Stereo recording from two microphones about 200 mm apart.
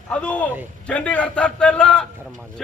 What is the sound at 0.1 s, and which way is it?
A man's voice, 5° left (ahead or behind).